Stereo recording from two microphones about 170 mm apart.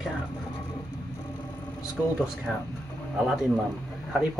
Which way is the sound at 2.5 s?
5° left (ahead or behind).